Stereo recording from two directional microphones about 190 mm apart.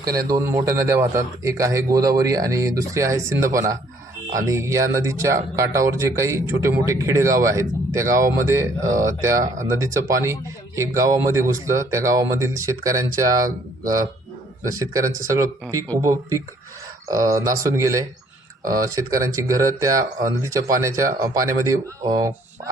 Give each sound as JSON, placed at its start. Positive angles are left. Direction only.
{"t": 0.3, "sound": "speech", "side_deg": -15}
{"t": 14.6, "sound": "speech", "side_deg": -20}
{"t": 17.1, "sound": "speech", "side_deg": -20}